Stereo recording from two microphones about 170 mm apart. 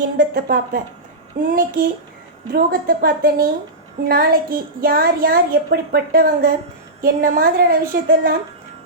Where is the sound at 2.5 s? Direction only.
65° right (ahead or behind).